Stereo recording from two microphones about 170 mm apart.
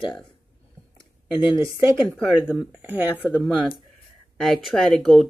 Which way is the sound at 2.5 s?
5° right (ahead or behind).